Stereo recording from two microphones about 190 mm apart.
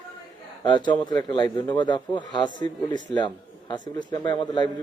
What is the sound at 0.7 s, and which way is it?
A man's voice, 25° left (ahead or behind).